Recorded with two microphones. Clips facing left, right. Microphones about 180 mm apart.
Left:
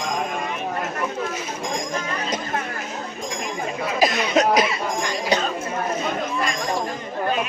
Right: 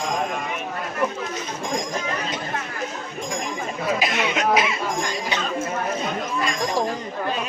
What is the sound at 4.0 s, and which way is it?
Cough, 40° left (ahead or behind).